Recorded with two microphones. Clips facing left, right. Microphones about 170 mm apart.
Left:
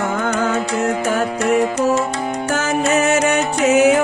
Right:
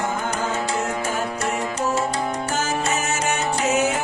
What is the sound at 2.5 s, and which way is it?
Music, 65° left (ahead or behind).